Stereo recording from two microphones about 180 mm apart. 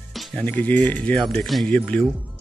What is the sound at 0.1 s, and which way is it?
Speech, centre (ahead or behind).